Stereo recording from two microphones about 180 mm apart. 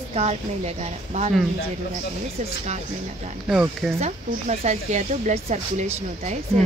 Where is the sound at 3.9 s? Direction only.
35° right (ahead or behind).